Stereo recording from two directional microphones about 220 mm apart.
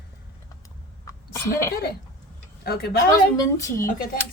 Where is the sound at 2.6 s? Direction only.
45° left (ahead or behind).